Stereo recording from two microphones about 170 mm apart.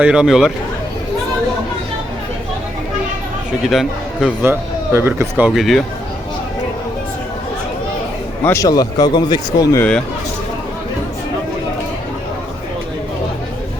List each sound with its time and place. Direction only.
0.0 s speech: 5° right (ahead or behind)
3.7 s speech: centre (ahead or behind)
4.4 s speech: 15° right (ahead or behind)
5.5 s speech: centre (ahead or behind)
8.4 s speech: 20° left (ahead or behind)